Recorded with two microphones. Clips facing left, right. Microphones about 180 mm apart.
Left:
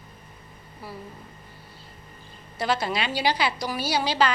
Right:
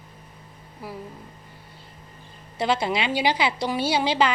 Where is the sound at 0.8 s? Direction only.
15° right (ahead or behind).